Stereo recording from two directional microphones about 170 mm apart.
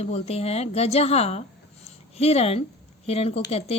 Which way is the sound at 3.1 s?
35° left (ahead or behind).